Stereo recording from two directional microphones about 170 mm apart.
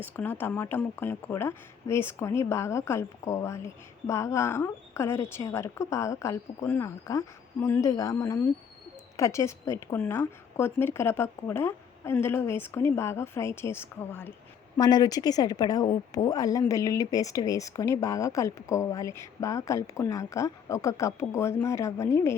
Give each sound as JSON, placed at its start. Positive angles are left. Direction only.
{"t": 0.0, "sound": "speech", "side_deg": 10}
{"t": 14.8, "sound": "a woman's voice", "side_deg": 25}